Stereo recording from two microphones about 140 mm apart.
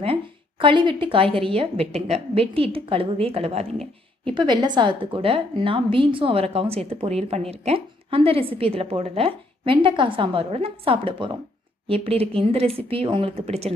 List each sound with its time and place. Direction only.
0.0 s speech: 40° right (ahead or behind)
4.3 s speech: 35° right (ahead or behind)